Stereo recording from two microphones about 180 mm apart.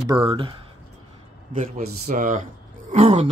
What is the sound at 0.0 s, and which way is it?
Speech, 25° right (ahead or behind).